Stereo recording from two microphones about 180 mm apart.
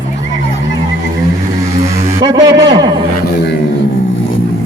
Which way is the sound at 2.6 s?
25° right (ahead or behind).